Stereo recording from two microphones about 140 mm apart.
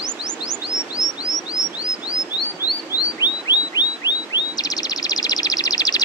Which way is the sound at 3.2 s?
30° left (ahead or behind).